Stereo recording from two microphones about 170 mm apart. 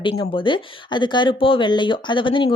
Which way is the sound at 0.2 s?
30° left (ahead or behind).